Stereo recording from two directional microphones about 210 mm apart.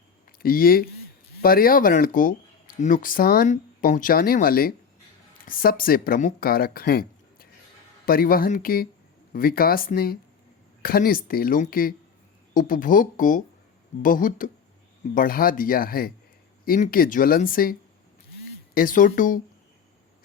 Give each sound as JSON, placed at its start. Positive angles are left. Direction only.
{"t": 0.3, "sound": "speech", "side_deg": 45}